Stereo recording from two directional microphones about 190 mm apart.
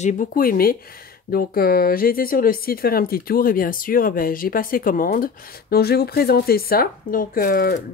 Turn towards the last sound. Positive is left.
turn(degrees=50)  # may be behind; listen again after turning